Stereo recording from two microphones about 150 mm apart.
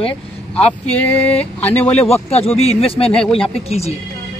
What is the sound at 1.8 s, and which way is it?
Speech, 45° left (ahead or behind).